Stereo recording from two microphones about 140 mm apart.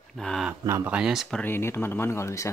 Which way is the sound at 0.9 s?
5° right (ahead or behind).